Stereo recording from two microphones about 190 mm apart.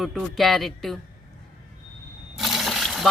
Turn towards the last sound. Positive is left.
turn(degrees=0)  # may be behind; listen again after turning